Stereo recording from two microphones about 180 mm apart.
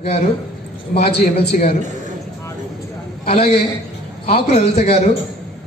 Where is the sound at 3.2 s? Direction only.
35° left (ahead or behind).